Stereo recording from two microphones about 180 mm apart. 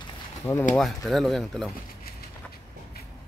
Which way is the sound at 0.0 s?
15° left (ahead or behind).